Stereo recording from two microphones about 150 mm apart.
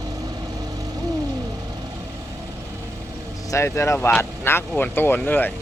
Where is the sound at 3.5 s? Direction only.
20° left (ahead or behind).